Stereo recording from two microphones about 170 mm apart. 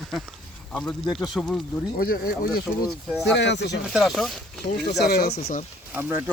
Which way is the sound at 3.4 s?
90° left.